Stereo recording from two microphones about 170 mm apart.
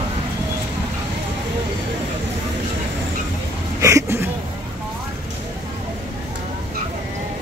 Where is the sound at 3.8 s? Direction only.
15° right (ahead or behind).